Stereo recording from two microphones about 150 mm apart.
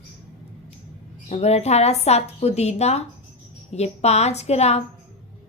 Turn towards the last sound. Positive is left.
turn(degrees=45)  # may be behind; listen again after turning